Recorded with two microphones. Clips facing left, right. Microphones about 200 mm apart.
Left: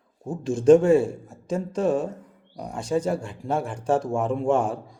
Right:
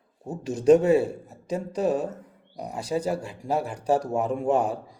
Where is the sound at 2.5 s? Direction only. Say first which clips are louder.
Left 3 dB; 5° right (ahead or behind).